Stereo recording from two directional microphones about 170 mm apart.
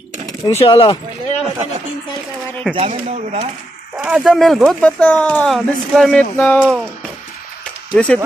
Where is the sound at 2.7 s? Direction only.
35° right (ahead or behind).